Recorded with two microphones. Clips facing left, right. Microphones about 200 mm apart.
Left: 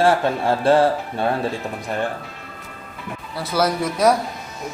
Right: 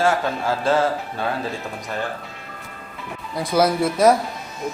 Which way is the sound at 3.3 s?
15° right (ahead or behind).